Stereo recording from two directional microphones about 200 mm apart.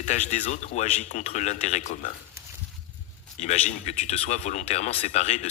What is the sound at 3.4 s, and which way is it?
A man's voice, 35° left (ahead or behind).